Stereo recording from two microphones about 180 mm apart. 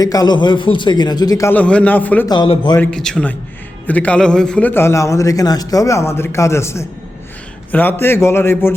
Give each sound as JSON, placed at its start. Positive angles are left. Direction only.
{"t": 0.0, "sound": "a man's voice", "side_deg": 20}
{"t": 2.2, "sound": "a man's voice", "side_deg": 20}
{"t": 2.7, "sound": "a man's voice", "side_deg": 5}